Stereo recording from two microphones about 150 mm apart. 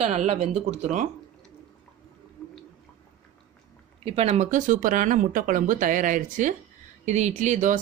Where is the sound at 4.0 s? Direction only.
40° right (ahead or behind).